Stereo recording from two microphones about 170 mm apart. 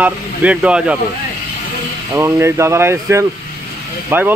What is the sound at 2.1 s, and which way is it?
Speech, 15° right (ahead or behind).